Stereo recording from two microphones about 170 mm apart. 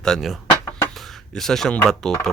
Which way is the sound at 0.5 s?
15° left (ahead or behind).